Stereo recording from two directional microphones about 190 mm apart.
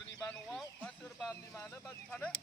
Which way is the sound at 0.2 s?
5° left (ahead or behind).